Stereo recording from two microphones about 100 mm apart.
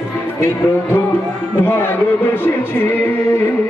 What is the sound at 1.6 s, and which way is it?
Speech, 20° left (ahead or behind).